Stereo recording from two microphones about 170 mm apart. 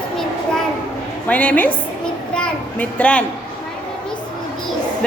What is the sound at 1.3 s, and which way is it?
Speech, 10° left (ahead or behind).